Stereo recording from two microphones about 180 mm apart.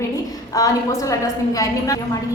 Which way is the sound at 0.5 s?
20° left (ahead or behind).